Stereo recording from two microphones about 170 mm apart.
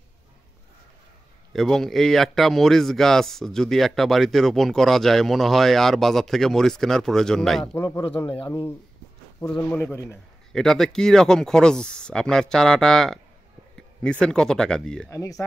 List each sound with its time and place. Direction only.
1.5 s speech: centre (ahead or behind)
7.7 s a man's voice: 15° left (ahead or behind)
10.5 s speech: centre (ahead or behind)
15.0 s a man's voice: 15° left (ahead or behind)